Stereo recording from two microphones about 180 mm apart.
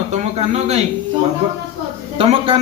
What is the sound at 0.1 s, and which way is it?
Speech, 40° right (ahead or behind).